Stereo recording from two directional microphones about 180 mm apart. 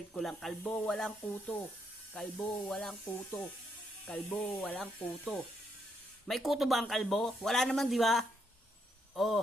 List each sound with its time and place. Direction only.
0.1 s speech: centre (ahead or behind)
4.0 s speech: 5° left (ahead or behind)